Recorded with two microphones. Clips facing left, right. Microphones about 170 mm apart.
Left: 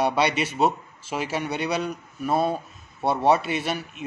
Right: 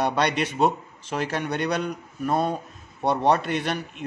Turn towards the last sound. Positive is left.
turn(degrees=5)  # may be behind; listen again after turning